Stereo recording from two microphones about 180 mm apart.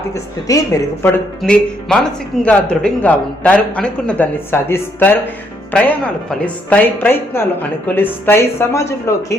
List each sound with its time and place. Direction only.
0.1 s a man's voice: 20° left (ahead or behind)
1.4 s a man's voice: 5° left (ahead or behind)